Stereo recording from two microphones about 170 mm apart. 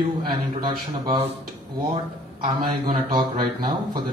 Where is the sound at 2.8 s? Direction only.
25° right (ahead or behind).